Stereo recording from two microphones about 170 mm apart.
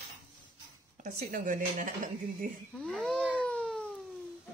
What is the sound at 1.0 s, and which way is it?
Speech, 55° right (ahead or behind).